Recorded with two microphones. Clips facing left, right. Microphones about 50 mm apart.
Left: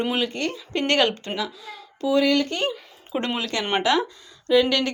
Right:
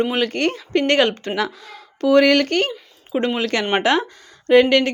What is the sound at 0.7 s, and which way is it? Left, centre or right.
Speech, right.